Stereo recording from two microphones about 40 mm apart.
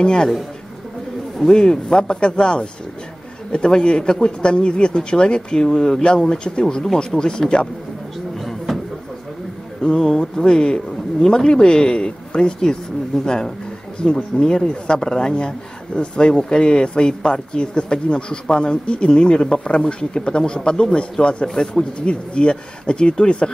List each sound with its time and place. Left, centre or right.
0.0 s speech: left
1.5 s speech: centre
9.8 s speech: centre